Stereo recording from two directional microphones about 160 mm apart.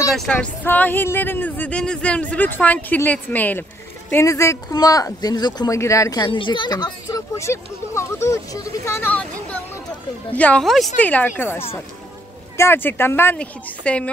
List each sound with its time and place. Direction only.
0.1 s a woman's voice: 5° left (ahead or behind)